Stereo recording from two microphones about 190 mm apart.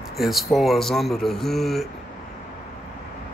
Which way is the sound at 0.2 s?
Centre (ahead or behind).